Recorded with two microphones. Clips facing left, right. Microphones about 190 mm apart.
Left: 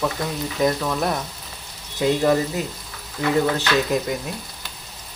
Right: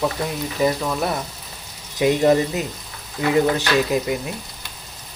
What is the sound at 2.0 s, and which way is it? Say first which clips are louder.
Frying: right 2 dB; 15° right (ahead or behind).